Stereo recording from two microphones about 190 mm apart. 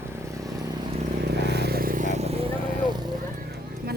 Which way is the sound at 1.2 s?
60° right (ahead or behind).